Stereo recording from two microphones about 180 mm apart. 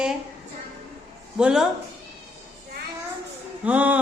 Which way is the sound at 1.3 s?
5° right (ahead or behind).